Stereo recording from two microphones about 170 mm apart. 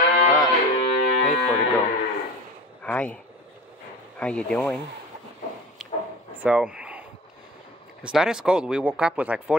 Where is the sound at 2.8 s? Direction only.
10° left (ahead or behind).